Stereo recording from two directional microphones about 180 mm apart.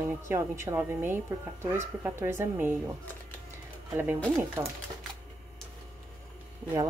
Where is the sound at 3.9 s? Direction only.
15° right (ahead or behind).